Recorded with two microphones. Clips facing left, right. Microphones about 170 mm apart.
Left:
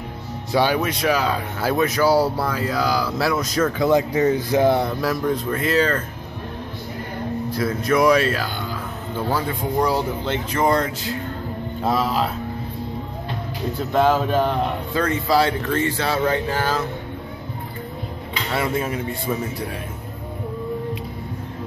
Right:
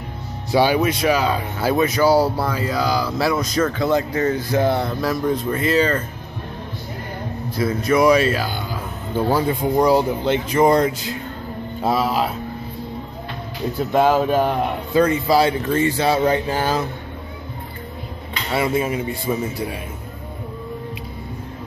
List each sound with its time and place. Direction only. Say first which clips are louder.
0.5 s speech: right 3 dB; 5° right (ahead or behind)
5.2 s speech: right 2 dB; 5° right (ahead or behind)
7.5 s speech: right 2 dB; centre (ahead or behind)
9.1 s a man's voice: right 5 dB; 15° right (ahead or behind)
13.9 s a man's voice: right 2 dB; 10° right (ahead or behind)
18.5 s a man's voice: right 3 dB; 10° right (ahead or behind)